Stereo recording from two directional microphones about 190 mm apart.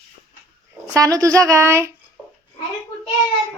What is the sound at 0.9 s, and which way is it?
Speech, 20° right (ahead or behind).